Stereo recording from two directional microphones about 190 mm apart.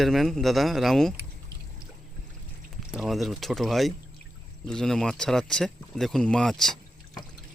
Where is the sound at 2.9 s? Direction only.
Centre (ahead or behind).